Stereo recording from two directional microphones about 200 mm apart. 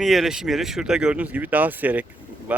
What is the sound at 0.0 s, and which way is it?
Speech, centre (ahead or behind).